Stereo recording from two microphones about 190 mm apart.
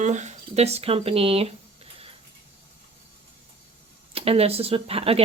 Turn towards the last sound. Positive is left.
turn(degrees=-30)  # may be behind; listen again after turning